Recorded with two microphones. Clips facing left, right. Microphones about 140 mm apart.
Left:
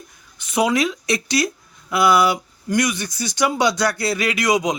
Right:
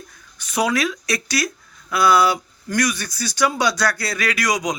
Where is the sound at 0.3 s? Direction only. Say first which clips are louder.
Left 2 dB; 25° left (ahead or behind).